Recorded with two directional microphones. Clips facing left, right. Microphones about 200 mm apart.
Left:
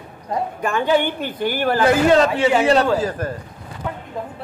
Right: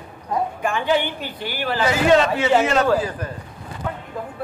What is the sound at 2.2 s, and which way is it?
A man's voice, 30° left (ahead or behind).